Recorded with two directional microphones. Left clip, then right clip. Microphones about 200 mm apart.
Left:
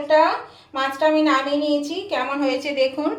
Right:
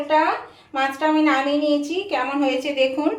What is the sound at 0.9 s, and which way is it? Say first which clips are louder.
A woman's voice: left 2 dB; 25° right (ahead or behind).